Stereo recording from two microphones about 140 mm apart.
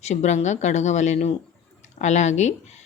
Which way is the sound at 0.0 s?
55° left (ahead or behind).